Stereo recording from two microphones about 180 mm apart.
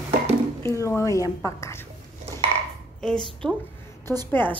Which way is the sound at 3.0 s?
5° left (ahead or behind).